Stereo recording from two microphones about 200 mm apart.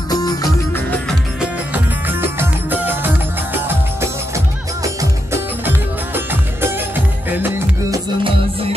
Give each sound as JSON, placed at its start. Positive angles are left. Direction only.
{"t": 0.1, "sound": "music", "side_deg": 20}
{"t": 1.4, "sound": "music", "side_deg": -10}
{"t": 7.2, "sound": "music", "side_deg": -10}